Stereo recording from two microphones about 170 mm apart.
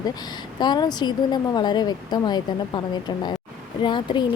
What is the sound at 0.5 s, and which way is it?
Speech, 25° left (ahead or behind).